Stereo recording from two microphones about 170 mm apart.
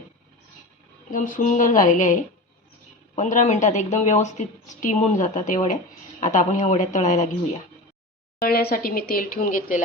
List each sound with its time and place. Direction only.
1.1 s a woman's voice: 50° left (ahead or behind)
3.2 s a woman's voice: 45° left (ahead or behind)
8.4 s speech: 65° left (ahead or behind)